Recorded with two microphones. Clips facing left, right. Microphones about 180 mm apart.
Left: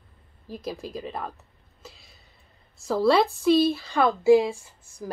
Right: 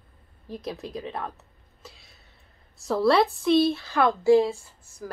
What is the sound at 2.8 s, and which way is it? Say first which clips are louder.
A woman's voice: even; centre (ahead or behind).